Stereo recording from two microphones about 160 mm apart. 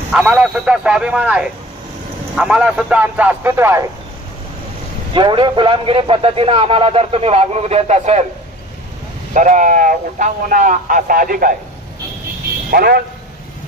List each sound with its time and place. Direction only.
0.1 s a man's voice: 5° right (ahead or behind)
5.1 s a man's voice: 30° right (ahead or behind); by 8.3 s 45° right (ahead or behind)
9.3 s speech: 50° right (ahead or behind)
12.7 s a man's voice: 75° right (ahead or behind)